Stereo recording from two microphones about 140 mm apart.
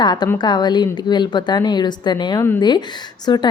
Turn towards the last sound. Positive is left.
turn(degrees=30)  # may be behind; listen again after turning